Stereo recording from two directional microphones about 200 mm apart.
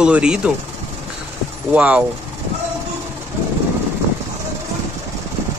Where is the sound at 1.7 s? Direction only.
5° right (ahead or behind).